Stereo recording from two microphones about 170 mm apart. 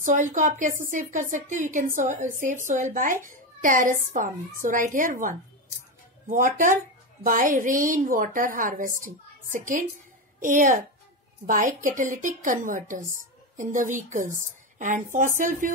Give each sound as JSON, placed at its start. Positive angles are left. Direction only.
{"t": 0.0, "sound": "a child's voice", "side_deg": -50}